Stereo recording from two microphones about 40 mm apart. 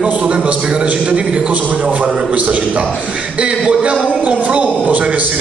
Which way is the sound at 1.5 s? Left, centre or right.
Right.